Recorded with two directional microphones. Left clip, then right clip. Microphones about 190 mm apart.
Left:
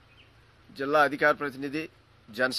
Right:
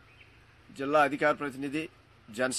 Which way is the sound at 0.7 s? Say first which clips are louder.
Left 2 dB; 5° left (ahead or behind).